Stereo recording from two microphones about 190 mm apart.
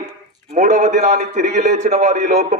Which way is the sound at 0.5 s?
40° right (ahead or behind).